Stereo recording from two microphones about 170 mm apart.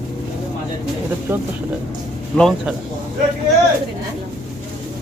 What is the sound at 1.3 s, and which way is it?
Speech, 15° right (ahead or behind).